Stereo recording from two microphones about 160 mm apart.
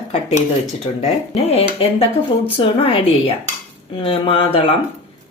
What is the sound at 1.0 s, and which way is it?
Speech, 40° left (ahead or behind).